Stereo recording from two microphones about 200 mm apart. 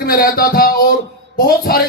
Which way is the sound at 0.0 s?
45° left (ahead or behind).